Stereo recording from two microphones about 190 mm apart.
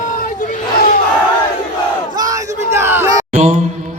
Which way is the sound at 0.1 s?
45° left (ahead or behind).